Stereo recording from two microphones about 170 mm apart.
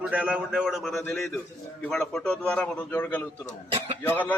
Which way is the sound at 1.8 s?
5° left (ahead or behind).